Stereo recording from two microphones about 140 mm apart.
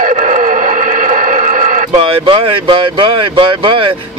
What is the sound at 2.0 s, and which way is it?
Speech, 35° right (ahead or behind).